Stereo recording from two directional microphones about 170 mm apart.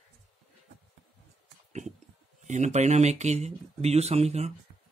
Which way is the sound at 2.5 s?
45° right (ahead or behind).